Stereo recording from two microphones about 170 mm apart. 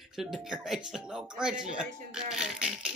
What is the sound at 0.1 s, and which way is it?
Speech, centre (ahead or behind).